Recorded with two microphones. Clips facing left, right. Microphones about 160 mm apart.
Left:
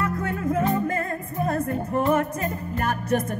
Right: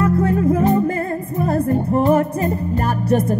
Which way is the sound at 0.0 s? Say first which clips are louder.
Right 10 dB; 35° right (ahead or behind).